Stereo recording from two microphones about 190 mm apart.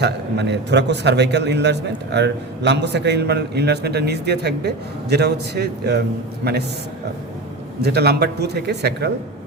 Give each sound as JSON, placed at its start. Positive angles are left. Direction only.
{"t": 0.0, "sound": "a man's voice", "side_deg": -65}
{"t": 7.8, "sound": "a man's voice", "side_deg": -60}